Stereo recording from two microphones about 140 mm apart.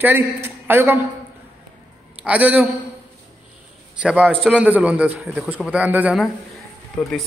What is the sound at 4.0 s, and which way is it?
A man's voice, 5° right (ahead or behind).